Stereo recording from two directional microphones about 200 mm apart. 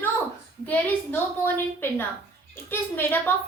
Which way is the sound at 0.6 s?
10° left (ahead or behind).